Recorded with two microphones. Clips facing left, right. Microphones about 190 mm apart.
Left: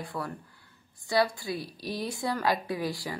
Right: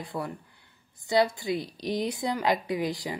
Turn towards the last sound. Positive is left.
turn(degrees=-20)  # may be behind; listen again after turning